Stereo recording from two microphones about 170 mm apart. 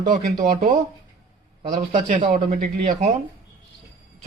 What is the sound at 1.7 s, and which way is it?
Speech, 45° right (ahead or behind).